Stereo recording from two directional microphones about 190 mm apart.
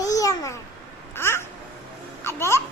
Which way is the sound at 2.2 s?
15° left (ahead or behind).